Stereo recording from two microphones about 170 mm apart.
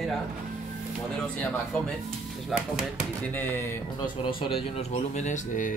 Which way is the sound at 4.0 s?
30° left (ahead or behind).